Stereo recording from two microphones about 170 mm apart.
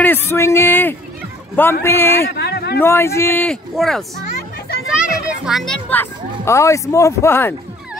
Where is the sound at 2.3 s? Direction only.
75° left (ahead or behind).